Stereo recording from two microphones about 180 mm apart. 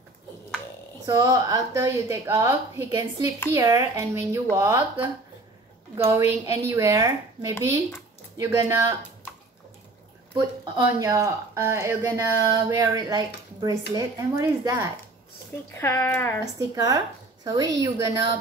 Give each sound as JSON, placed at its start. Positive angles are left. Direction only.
{"t": 1.0, "sound": "speech", "side_deg": -20}
{"t": 6.1, "sound": "a woman's voice", "side_deg": -20}
{"t": 10.3, "sound": "a woman's voice", "side_deg": -25}
{"t": 11.1, "sound": "speech", "side_deg": -15}
{"t": 15.7, "sound": "speech", "side_deg": 15}
{"t": 16.5, "sound": "a woman's voice", "side_deg": -20}